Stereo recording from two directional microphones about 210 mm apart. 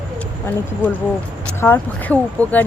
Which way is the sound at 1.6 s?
10° left (ahead or behind).